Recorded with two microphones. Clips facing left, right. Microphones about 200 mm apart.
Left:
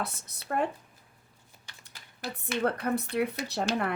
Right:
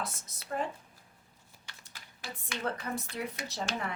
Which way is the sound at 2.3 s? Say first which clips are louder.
Left 7 dB; 60° left (ahead or behind).